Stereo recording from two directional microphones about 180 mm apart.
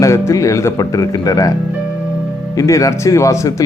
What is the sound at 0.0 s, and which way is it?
Speech, 15° left (ahead or behind).